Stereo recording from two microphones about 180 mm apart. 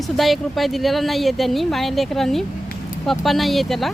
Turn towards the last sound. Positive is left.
turn(degrees=0)  # may be behind; listen again after turning